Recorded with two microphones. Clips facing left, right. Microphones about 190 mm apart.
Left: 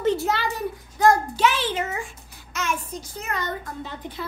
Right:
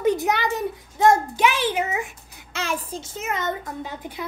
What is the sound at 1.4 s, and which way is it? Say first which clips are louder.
Speech: right 1 dB; 10° right (ahead or behind).